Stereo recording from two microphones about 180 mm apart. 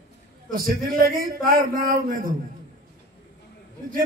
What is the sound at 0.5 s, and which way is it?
A man's voice, 55° right (ahead or behind).